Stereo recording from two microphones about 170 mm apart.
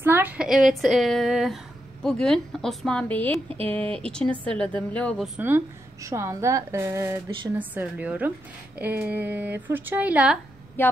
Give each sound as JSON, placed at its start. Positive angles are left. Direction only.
{"t": 0.0, "sound": "a woman's voice", "side_deg": -10}
{"t": 6.0, "sound": "speech", "side_deg": -15}
{"t": 10.8, "sound": "speech", "side_deg": 10}